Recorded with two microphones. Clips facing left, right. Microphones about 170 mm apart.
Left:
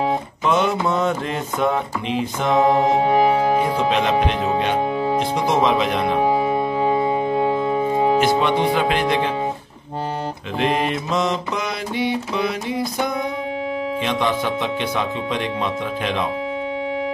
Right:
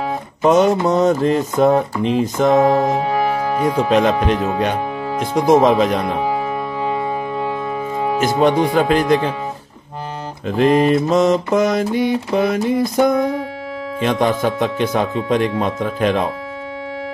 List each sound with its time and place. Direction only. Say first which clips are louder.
0.4 s speech: right 8 dB; 40° right (ahead or behind)
2.9 s music: left 2 dB; 25° left (ahead or behind)
3.9 s mantra: right 4 dB; 45° right (ahead or behind)
6.2 s music: left 2 dB; 25° left (ahead or behind)
8.2 s mantra: right 3 dB; 45° right (ahead or behind)
10.6 s mantra: right 8 dB; 40° right (ahead or behind)